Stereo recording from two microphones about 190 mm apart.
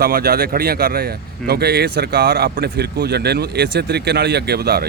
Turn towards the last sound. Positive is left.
turn(degrees=-55)  # may be behind; listen again after turning